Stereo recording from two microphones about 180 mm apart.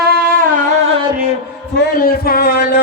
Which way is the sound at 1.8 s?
60° left (ahead or behind).